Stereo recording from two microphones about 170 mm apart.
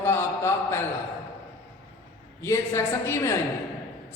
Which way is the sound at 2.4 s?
15° left (ahead or behind).